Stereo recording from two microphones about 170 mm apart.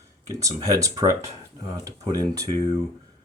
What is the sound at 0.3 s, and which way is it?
Speech, 20° right (ahead or behind).